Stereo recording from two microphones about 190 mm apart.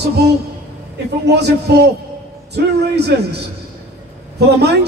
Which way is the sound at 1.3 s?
60° right (ahead or behind).